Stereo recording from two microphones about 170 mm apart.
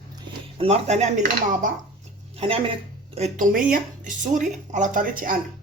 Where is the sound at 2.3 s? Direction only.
35° right (ahead or behind); by 5.3 s 55° right (ahead or behind).